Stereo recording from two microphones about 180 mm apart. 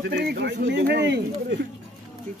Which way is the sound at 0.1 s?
65° right (ahead or behind).